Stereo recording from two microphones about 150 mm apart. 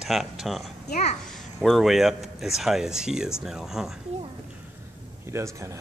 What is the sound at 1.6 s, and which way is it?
Speech, centre (ahead or behind).